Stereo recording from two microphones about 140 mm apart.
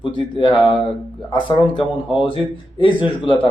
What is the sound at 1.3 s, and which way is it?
Speech, 35° left (ahead or behind).